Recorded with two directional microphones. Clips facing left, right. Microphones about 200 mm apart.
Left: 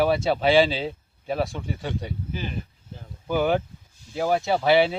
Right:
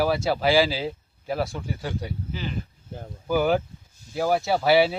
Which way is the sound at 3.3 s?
5° right (ahead or behind).